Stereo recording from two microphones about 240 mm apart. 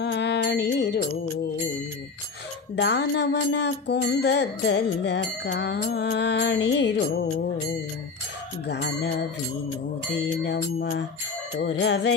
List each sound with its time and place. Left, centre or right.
0.0 s music: left
2.7 s music: left
8.6 s music: left